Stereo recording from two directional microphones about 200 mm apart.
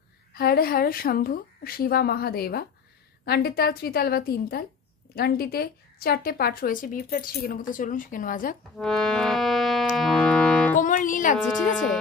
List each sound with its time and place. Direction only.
0.3 s a woman's voice: 50° left (ahead or behind)
8.7 s music: 5° left (ahead or behind)
10.8 s music: 40° left (ahead or behind)
11.5 s speech: 5° left (ahead or behind)